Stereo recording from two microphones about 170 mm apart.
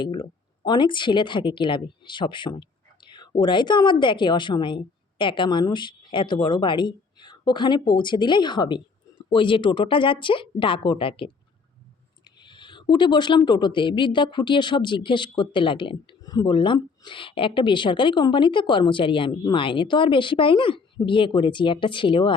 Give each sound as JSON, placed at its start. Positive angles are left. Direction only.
{"t": 0.0, "sound": "speech", "side_deg": 30}